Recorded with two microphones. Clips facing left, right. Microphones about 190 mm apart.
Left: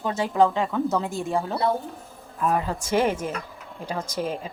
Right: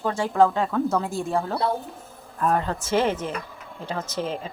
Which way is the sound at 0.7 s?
5° left (ahead or behind).